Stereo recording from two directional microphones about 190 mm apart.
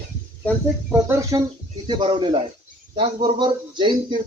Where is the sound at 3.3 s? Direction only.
25° right (ahead or behind).